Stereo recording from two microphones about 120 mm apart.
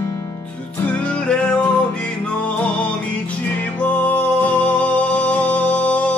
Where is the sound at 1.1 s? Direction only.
10° left (ahead or behind).